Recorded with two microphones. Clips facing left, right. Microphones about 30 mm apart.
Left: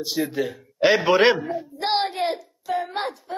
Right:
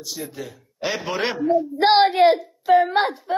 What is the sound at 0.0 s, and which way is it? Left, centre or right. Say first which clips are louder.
A man's voice: left 8 dB; left.